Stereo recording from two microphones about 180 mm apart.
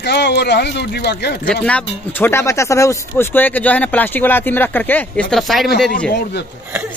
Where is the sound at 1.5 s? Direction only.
5° left (ahead or behind).